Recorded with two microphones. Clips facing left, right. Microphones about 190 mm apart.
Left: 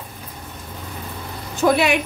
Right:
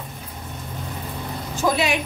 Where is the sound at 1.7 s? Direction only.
60° left (ahead or behind).